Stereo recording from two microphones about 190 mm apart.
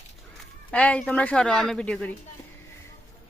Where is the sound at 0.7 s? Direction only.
5° left (ahead or behind).